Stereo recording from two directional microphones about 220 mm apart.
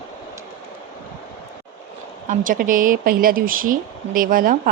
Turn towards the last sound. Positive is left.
turn(degrees=-40)  # may be behind; listen again after turning